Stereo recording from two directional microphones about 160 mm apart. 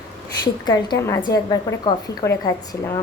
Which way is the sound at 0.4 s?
25° left (ahead or behind).